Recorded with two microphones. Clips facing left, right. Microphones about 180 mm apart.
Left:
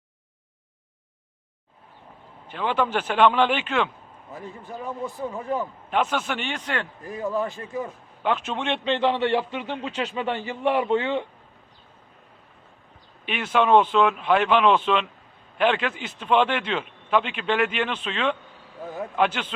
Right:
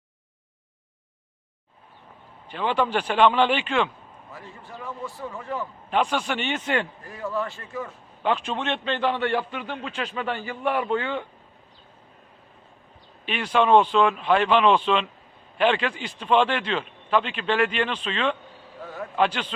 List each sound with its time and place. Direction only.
2.5 s speech: 5° left (ahead or behind)
4.3 s a man's voice: 20° left (ahead or behind)
5.9 s speech: 5° left (ahead or behind)
7.0 s a man's voice: 15° left (ahead or behind)
8.2 s speech: 5° left (ahead or behind)
8.7 s a man's voice: 20° left (ahead or behind)
13.2 s a man's voice: 5° left (ahead or behind)